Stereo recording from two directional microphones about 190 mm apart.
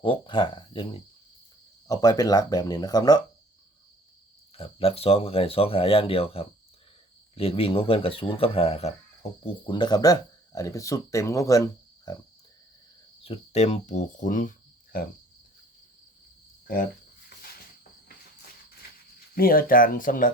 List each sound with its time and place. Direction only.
0.0 s speech: 25° left (ahead or behind)
4.5 s speech: 30° left (ahead or behind)
13.2 s speech: 30° left (ahead or behind)
19.3 s speech: 50° left (ahead or behind)